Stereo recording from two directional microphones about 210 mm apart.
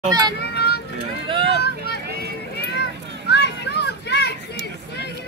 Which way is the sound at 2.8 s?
55° left (ahead or behind).